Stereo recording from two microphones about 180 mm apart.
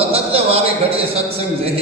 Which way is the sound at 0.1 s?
35° right (ahead or behind).